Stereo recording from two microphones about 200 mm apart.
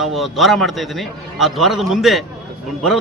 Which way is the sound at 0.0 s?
Centre (ahead or behind).